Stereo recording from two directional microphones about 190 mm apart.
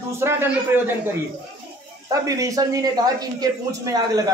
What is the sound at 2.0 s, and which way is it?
Speech, 20° right (ahead or behind).